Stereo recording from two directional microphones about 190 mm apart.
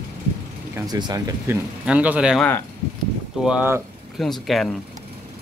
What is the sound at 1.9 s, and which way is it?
Speech, 5° right (ahead or behind).